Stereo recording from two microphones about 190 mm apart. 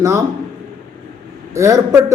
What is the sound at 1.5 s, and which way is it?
Speech, 15° right (ahead or behind).